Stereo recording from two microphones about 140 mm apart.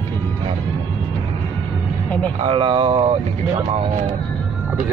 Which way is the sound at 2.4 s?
40° right (ahead or behind).